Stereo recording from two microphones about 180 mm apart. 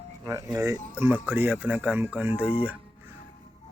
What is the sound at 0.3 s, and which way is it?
Speech, 15° right (ahead or behind).